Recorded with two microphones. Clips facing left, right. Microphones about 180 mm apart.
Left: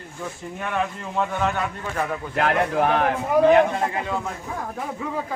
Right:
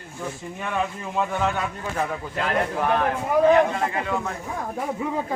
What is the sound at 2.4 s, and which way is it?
Speech, 60° left (ahead or behind).